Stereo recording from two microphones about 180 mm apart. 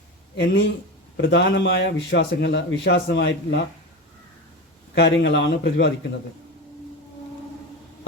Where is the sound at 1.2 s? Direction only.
80° left.